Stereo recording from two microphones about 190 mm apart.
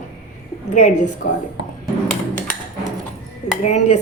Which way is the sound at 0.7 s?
40° left (ahead or behind).